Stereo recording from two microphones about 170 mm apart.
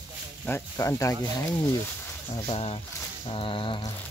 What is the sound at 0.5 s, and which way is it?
Speech, 15° left (ahead or behind).